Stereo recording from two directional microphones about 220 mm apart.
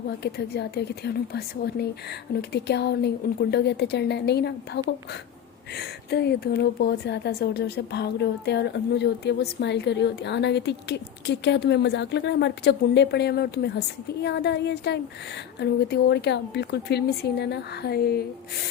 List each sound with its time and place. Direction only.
0.2 s a woman's voice: 45° left (ahead or behind)